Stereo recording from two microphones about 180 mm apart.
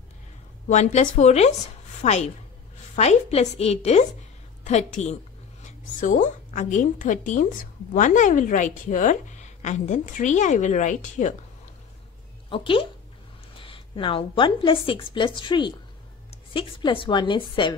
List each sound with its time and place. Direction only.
0.7 s a woman's voice: 40° left (ahead or behind)
12.4 s a woman's voice: 30° left (ahead or behind)